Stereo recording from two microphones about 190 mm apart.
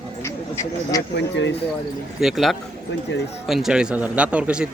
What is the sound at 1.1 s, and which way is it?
Speech, 65° left (ahead or behind).